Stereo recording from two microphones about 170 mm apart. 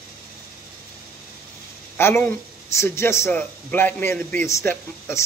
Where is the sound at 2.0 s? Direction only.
15° left (ahead or behind).